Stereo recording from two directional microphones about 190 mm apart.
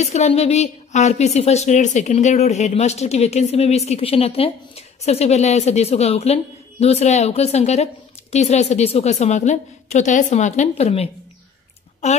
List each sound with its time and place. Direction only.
0.0 s a woman's voice: 35° left (ahead or behind)